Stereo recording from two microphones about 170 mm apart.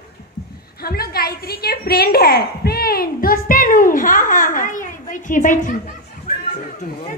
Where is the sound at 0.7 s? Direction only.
65° left (ahead or behind); by 5.8 s 50° left (ahead or behind).